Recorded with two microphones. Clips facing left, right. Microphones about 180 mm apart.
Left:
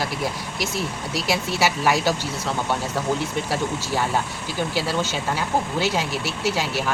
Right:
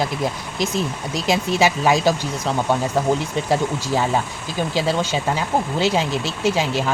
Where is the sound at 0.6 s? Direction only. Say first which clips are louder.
Right 5 dB; 20° right (ahead or behind).